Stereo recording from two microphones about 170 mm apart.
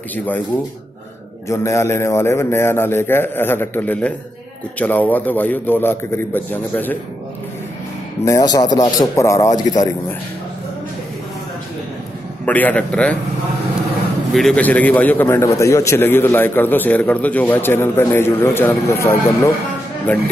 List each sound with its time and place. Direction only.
1.5 s a man's voice: 15° left (ahead or behind)
8.3 s a man's voice: 20° left (ahead or behind)
12.4 s a man's voice: 10° left (ahead or behind)
14.3 s a man's voice: 5° left (ahead or behind)